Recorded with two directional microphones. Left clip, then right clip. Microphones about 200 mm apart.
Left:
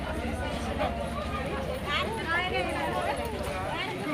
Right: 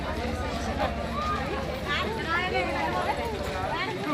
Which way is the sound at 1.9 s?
40° left (ahead or behind).